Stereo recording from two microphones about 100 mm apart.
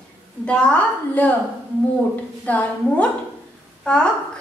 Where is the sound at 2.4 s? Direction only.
15° left (ahead or behind).